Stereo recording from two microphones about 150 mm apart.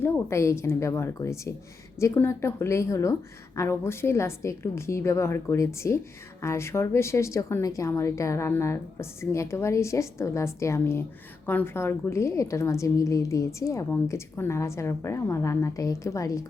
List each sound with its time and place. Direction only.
0.0 s a woman's voice: 15° left (ahead or behind)